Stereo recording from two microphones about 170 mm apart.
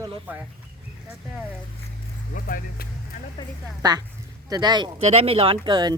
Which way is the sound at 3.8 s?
25° right (ahead or behind).